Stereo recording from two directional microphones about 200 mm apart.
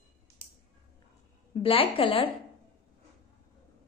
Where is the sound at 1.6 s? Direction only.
25° left (ahead or behind).